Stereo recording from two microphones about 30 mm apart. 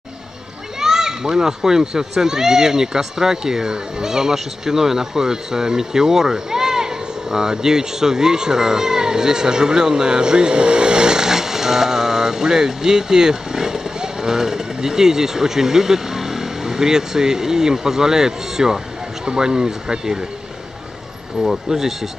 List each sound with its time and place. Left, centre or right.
0.7 s a child's voice: centre
21.4 s speech: centre